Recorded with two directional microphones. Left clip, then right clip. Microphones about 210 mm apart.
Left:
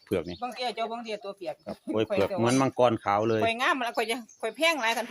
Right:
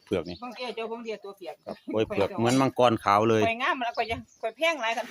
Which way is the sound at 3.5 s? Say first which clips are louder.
Left 1 dB; 50° left (ahead or behind).